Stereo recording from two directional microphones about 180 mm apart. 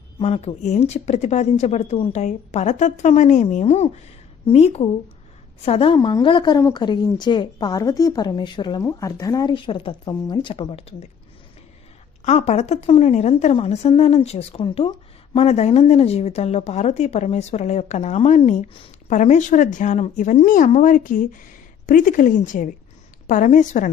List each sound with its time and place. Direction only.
0.2 s a woman's voice: 35° left (ahead or behind)
12.2 s a woman's voice: 35° left (ahead or behind)